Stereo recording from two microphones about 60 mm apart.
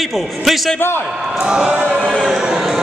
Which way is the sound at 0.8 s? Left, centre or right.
Left.